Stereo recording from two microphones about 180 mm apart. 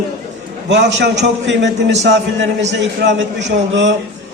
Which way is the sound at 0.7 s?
85° right.